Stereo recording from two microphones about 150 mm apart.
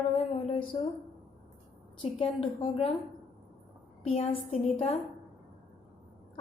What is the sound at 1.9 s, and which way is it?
Speech, 40° left (ahead or behind).